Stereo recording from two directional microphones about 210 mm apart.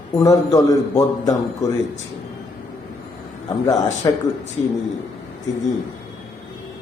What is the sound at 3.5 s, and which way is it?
Speech, 15° left (ahead or behind).